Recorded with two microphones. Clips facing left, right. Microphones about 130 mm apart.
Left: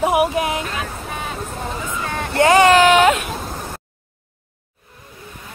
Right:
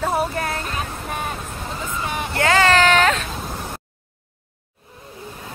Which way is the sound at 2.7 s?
10° left (ahead or behind).